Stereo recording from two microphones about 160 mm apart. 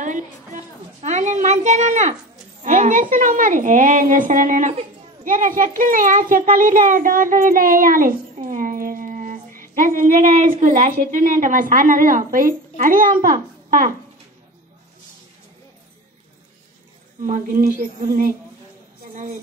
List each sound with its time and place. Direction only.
0.0 s a sound: 50° right (ahead or behind)
2.6 s a woman's voice: 50° right (ahead or behind)
17.2 s a woman's voice: 60° right (ahead or behind)